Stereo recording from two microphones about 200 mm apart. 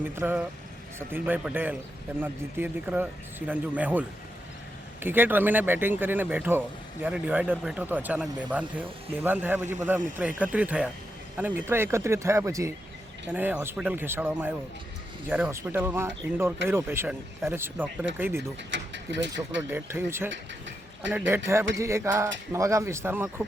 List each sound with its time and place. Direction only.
0.0 s speech: 10° right (ahead or behind)
18.7 s speech: 65° right (ahead or behind)
19.7 s speech: 10° right (ahead or behind)
20.3 s a sound: 65° right (ahead or behind)
21.1 s speech: 10° right (ahead or behind)